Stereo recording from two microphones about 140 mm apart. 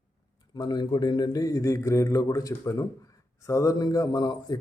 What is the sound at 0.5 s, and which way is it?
Speech, 30° left (ahead or behind).